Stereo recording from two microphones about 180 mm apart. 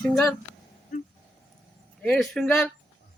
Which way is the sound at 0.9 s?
50° left (ahead or behind).